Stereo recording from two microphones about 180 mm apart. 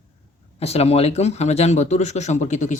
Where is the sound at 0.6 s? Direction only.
35° left (ahead or behind).